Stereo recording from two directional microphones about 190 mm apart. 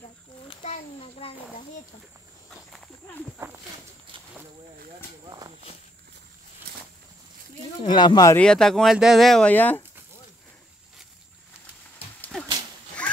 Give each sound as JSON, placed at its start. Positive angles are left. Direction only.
{"t": 0.5, "sound": "a sound", "side_deg": 30}
{"t": 2.5, "sound": "walk", "side_deg": 0}
{"t": 7.8, "sound": "speech", "side_deg": 25}
{"t": 8.4, "sound": "speech", "side_deg": 5}
{"t": 12.2, "sound": "dog", "side_deg": 5}
{"t": 13.0, "sound": "quack", "side_deg": 5}